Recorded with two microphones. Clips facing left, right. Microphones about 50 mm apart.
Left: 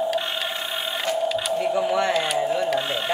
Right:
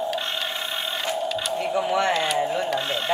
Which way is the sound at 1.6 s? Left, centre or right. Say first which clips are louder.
Even; right.